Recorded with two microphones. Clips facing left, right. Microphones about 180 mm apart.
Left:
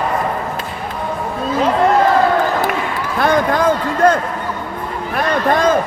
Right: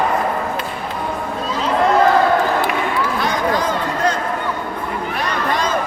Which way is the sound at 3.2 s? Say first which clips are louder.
Left 9 dB; 55° left (ahead or behind).